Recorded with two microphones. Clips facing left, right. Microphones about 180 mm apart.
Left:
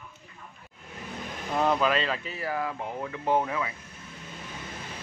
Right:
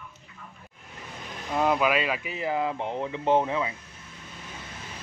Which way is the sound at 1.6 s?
10° right (ahead or behind).